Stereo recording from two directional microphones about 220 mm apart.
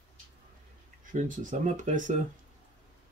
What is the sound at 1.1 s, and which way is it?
Speech, 35° right (ahead or behind).